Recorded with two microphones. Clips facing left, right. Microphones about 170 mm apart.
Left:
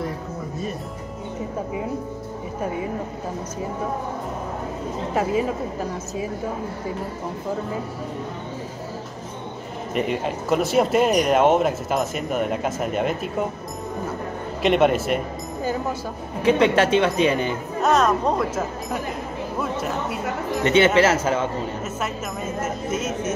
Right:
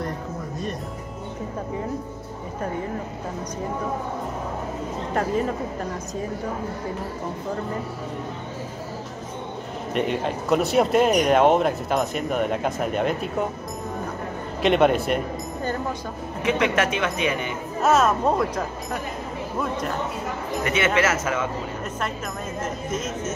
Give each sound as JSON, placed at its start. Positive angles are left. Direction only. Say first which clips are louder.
{"t": 5.1, "sound": "speech", "louder": "left 1 dB", "side_deg": 5}
{"t": 9.9, "sound": "speech", "louder": "even", "side_deg": 0}
{"t": 14.6, "sound": "speech", "louder": "even", "side_deg": 0}
{"t": 16.4, "sound": "speech", "louder": "left 5 dB", "side_deg": 30}
{"t": 17.8, "sound": "speech", "louder": "even", "side_deg": -5}
{"t": 20.6, "sound": "speech", "louder": "left 6 dB", "side_deg": 30}
{"t": 22.6, "sound": "speech", "louder": "left 2 dB", "side_deg": 10}